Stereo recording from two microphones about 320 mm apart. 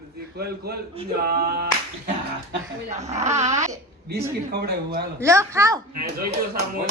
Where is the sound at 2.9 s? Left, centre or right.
Right.